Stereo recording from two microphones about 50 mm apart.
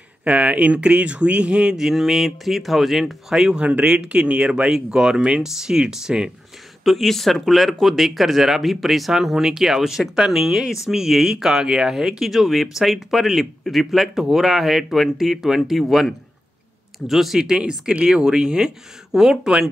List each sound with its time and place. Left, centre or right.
0.2 s speech: right
6.8 s speech: centre
17.1 s speech: centre